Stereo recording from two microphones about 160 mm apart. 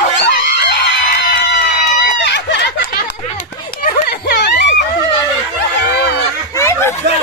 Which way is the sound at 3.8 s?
90° left.